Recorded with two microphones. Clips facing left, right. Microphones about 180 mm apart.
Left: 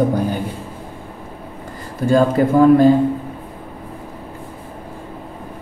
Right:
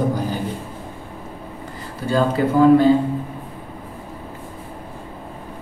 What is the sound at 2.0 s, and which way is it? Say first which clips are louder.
Speech: left 4 dB; 45° left (ahead or behind).